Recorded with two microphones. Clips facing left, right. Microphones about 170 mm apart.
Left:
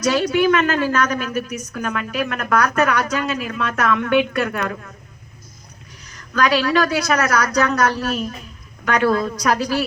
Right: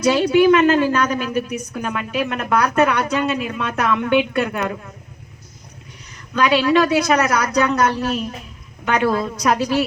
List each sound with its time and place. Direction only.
0.0 s a woman's voice: 25° right (ahead or behind)
6.3 s a woman's voice: 25° right (ahead or behind)